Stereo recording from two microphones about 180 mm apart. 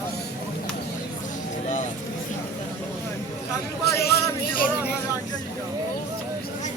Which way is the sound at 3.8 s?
65° left (ahead or behind).